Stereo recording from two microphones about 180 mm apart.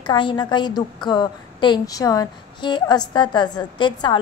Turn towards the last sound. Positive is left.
turn(degrees=25)  # may be behind; listen again after turning